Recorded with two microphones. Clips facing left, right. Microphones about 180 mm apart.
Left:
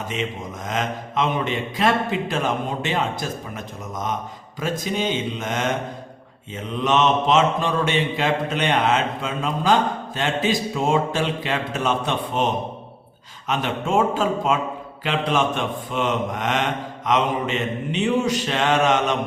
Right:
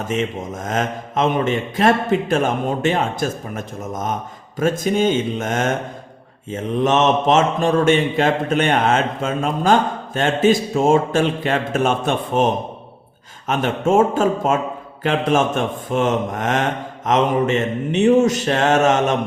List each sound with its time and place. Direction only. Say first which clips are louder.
0.1 s a man's voice: right 8 dB; 50° right (ahead or behind)
13.5 s a man's voice: right 5 dB; 50° right (ahead or behind)